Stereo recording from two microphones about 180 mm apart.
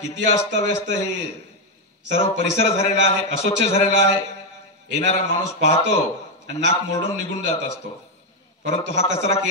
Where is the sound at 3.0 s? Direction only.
35° left (ahead or behind).